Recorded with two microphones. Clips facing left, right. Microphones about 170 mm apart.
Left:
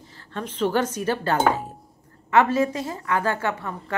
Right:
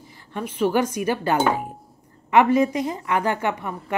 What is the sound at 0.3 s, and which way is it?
A woman's voice, 10° right (ahead or behind).